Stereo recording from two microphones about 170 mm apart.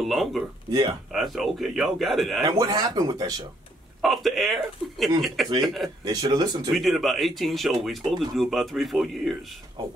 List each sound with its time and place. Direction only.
0.0 s speech: centre (ahead or behind)
0.7 s speech: 25° right (ahead or behind)
1.1 s speech: centre (ahead or behind)
2.4 s speech: 20° right (ahead or behind)
4.0 s speech: centre (ahead or behind)
6.0 s speech: 25° right (ahead or behind)
6.7 s speech: centre (ahead or behind)